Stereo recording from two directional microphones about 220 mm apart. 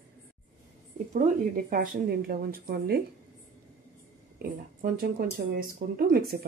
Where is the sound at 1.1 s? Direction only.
35° right (ahead or behind).